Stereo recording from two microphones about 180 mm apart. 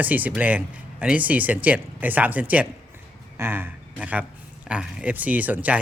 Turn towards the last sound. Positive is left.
turn(degrees=-10)  # may be behind; listen again after turning